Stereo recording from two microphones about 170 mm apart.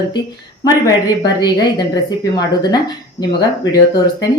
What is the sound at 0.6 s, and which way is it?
A woman's voice, 20° left (ahead or behind).